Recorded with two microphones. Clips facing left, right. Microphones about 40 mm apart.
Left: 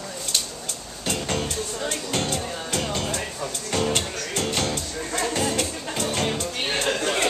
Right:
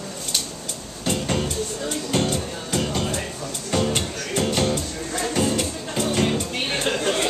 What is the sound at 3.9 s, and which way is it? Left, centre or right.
Music, centre.